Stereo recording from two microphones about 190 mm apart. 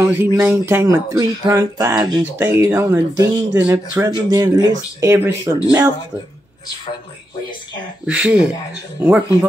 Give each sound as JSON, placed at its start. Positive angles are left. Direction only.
{"t": 0.0, "sound": "speech", "side_deg": -15}
{"t": 8.1, "sound": "speech", "side_deg": -5}